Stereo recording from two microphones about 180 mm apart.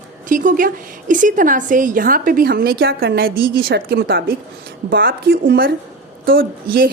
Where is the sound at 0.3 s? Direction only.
50° right (ahead or behind).